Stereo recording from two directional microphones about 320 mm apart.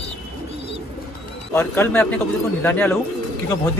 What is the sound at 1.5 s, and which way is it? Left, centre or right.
Speech, centre.